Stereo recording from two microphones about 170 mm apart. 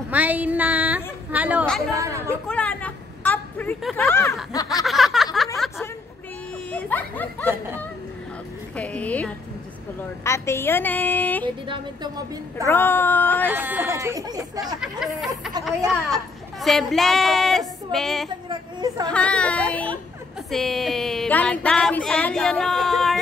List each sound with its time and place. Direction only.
0.1 s a woman's voice: 10° right (ahead or behind)
2.4 s a sound: 5° left (ahead or behind)
3.9 s a woman's voice: 15° left (ahead or behind)
4.8 s a sound: centre (ahead or behind)
6.7 s speech: 10° left (ahead or behind)
8.7 s a woman's voice: 10° left (ahead or behind)
11.6 s speech: 30° right (ahead or behind)
12.6 s a woman's voice: 15° left (ahead or behind)
13.5 s speech: 10° right (ahead or behind)
14.8 s speech: centre (ahead or behind)
18.5 s a woman's voice: 25° right (ahead or behind)
19.1 s a woman's voice: 5° left (ahead or behind)